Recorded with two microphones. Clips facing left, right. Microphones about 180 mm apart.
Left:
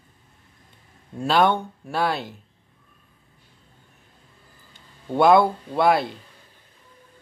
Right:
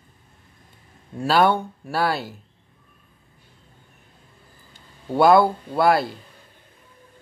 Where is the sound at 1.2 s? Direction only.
5° right (ahead or behind).